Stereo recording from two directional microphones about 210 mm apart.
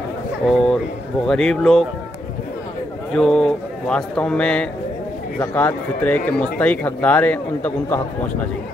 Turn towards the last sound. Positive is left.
turn(degrees=10)  # may be behind; listen again after turning